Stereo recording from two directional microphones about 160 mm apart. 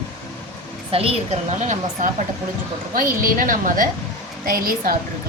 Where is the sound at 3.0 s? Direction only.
60° right (ahead or behind).